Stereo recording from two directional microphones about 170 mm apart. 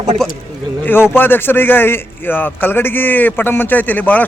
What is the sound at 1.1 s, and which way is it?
A man's voice, 10° left (ahead or behind).